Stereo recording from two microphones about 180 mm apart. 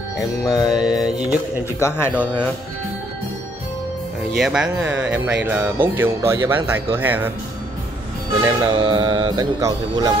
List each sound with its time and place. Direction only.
0.4 s music: 20° left (ahead or behind)
0.7 s mantra: 5° right (ahead or behind)
1.8 s speech: 15° left (ahead or behind)
4.3 s speech: centre (ahead or behind)
8.4 s speech: 20° right (ahead or behind)